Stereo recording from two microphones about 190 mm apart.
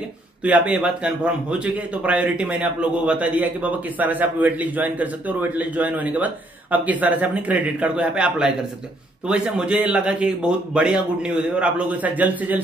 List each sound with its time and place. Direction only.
0.4 s a man's voice: 5° right (ahead or behind)